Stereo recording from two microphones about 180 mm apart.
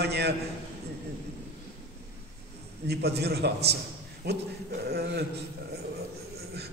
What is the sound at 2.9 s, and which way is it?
A man's voice, 65° right (ahead or behind).